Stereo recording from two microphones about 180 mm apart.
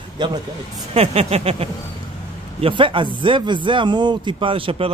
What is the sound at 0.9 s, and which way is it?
Speech, 35° right (ahead or behind).